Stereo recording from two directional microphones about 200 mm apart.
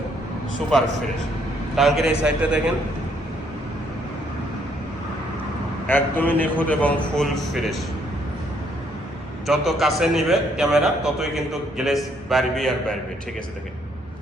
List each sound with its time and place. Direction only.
1.7 s a man's voice: centre (ahead or behind)
5.9 s a man's voice: 10° left (ahead or behind)
9.5 s a man's voice: centre (ahead or behind)